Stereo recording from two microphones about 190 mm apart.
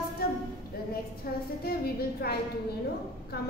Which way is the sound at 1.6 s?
55° left (ahead or behind).